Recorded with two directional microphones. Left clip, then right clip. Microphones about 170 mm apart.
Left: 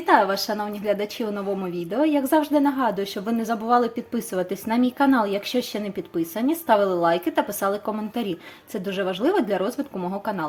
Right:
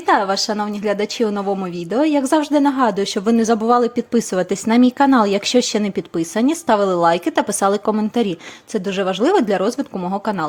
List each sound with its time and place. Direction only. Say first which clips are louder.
0.0 s a woman's voice: right 3 dB; 25° right (ahead or behind)